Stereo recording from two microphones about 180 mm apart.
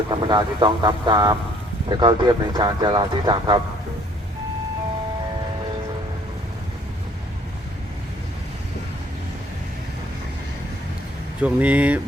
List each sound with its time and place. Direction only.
0.1 s speech: 25° right (ahead or behind)
11.3 s speech: 5° right (ahead or behind)